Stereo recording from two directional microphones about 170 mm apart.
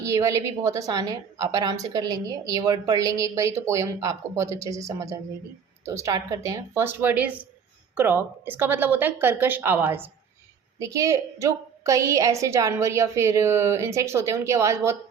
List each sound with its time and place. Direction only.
0.0 s a woman's voice: 20° right (ahead or behind)